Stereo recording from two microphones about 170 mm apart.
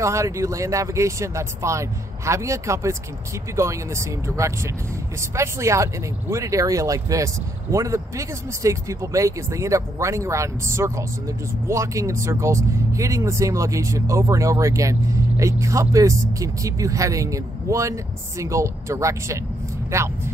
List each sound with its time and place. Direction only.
0.0 s speech: 15° right (ahead or behind)